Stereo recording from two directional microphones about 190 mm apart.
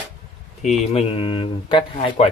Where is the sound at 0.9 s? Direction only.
30° left (ahead or behind).